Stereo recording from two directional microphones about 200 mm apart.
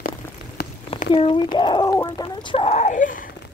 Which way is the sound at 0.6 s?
55° left (ahead or behind).